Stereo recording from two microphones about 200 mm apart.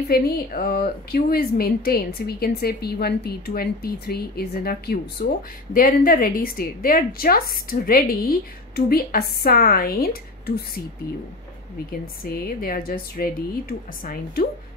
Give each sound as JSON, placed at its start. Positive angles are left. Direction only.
{"t": 0.1, "sound": "speech", "side_deg": 50}
{"t": 12.2, "sound": "speech", "side_deg": 45}